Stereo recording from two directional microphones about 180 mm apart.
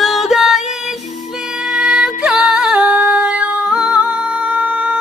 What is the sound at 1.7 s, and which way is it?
Music, 5° right (ahead or behind).